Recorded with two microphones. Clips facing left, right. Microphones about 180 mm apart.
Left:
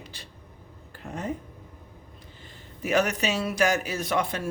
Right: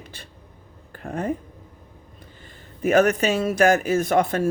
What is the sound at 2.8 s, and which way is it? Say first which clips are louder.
Speech: right 7 dB; 50° right (ahead or behind).